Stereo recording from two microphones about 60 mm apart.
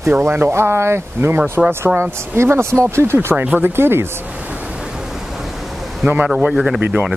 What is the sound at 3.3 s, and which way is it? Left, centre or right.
Speech, right.